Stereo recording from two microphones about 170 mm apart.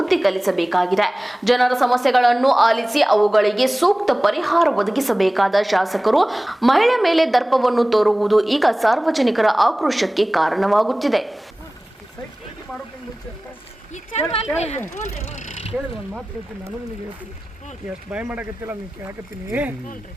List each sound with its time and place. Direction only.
0.0 s a woman's voice: centre (ahead or behind)
13.9 s speech: 35° left (ahead or behind)
15.3 s mechanisms: 40° left (ahead or behind)
18.1 s speech: 10° right (ahead or behind)